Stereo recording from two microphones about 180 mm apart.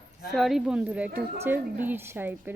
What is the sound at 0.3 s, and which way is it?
A woman's voice, centre (ahead or behind).